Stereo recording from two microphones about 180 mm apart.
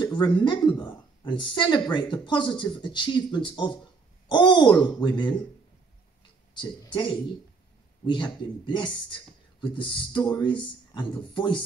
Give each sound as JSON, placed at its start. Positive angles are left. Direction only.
{"t": 0.0, "sound": "speech", "side_deg": 25}
{"t": 6.5, "sound": "speech", "side_deg": 25}